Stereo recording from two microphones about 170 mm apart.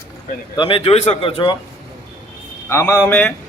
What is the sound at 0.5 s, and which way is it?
A man's voice, 30° left (ahead or behind).